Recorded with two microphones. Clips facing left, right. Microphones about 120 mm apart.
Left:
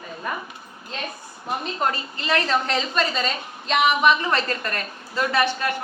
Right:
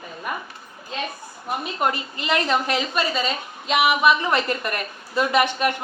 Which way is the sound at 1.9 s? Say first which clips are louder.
Even; 15° right (ahead or behind).